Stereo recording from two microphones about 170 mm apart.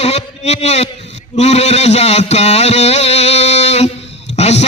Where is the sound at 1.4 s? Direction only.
40° left (ahead or behind).